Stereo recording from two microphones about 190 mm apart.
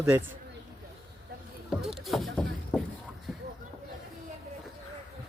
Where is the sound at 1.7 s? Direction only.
Centre (ahead or behind).